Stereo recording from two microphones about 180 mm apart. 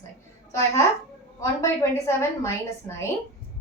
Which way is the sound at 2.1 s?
15° left (ahead or behind).